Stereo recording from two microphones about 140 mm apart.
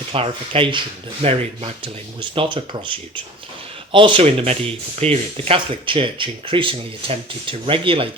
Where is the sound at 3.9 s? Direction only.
35° right (ahead or behind).